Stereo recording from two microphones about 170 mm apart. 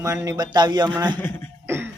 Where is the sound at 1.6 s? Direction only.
15° right (ahead or behind).